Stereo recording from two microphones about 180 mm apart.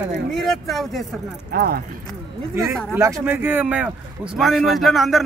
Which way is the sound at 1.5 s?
55° right (ahead or behind).